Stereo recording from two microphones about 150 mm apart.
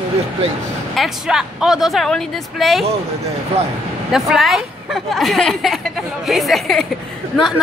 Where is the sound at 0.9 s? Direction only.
Centre (ahead or behind).